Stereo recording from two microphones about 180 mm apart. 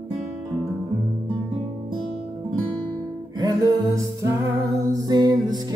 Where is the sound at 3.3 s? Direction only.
20° right (ahead or behind).